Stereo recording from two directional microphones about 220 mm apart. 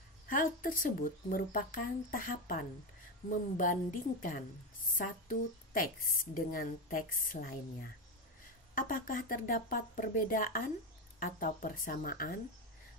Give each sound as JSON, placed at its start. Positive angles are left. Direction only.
{"t": 0.3, "sound": "speech", "side_deg": 40}